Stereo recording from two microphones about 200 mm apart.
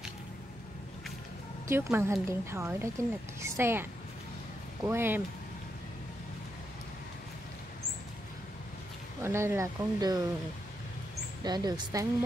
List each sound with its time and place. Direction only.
1.7 s a woman's voice: 10° right (ahead or behind)
4.8 s a woman's voice: 10° right (ahead or behind)
9.2 s a woman's voice: 10° right (ahead or behind)
11.4 s speech: 20° right (ahead or behind)